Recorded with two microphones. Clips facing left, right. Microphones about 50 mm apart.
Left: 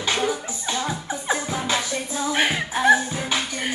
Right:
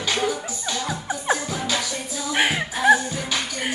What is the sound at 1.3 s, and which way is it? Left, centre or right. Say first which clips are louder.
Music: left 2 dB; centre.